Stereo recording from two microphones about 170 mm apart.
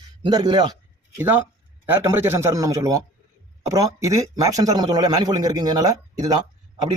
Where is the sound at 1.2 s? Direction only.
10° right (ahead or behind).